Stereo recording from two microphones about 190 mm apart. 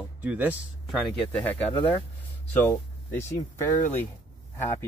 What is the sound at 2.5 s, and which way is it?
Speech, 10° left (ahead or behind).